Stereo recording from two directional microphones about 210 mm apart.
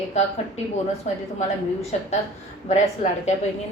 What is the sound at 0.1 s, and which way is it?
Speech, 30° left (ahead or behind).